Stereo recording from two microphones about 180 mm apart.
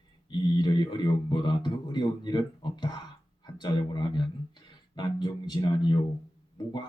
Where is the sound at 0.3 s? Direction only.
25° left (ahead or behind).